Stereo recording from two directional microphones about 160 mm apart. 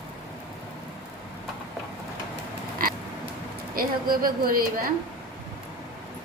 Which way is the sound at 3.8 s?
65° right (ahead or behind).